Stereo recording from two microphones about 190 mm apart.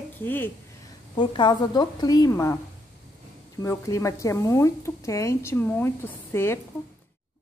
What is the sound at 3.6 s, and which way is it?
A woman's voice, 15° left (ahead or behind).